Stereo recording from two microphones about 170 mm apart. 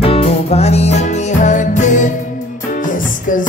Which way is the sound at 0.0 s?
35° left (ahead or behind).